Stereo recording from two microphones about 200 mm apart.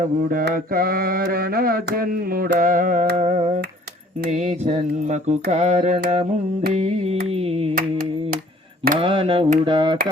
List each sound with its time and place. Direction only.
0.0 s mantra: 45° right (ahead or behind); by 7.8 s 30° right (ahead or behind)
7.8 s mantra: 45° right (ahead or behind)
9.0 s mantra: 25° right (ahead or behind)